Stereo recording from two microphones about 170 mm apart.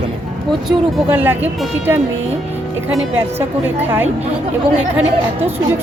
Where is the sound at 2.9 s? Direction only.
5° right (ahead or behind).